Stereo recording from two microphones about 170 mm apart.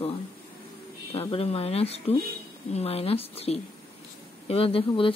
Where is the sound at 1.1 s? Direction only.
35° left (ahead or behind).